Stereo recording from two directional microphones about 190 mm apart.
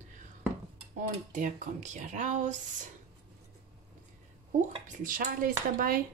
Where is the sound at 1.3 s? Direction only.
40° right (ahead or behind).